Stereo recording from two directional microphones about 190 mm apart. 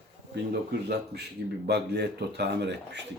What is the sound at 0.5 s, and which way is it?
Speech, 60° right (ahead or behind).